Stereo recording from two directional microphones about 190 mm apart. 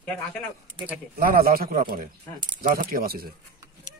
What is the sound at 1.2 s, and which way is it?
A man's voice, 50° right (ahead or behind).